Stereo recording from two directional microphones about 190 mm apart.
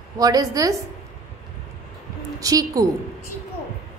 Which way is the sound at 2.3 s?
20° right (ahead or behind).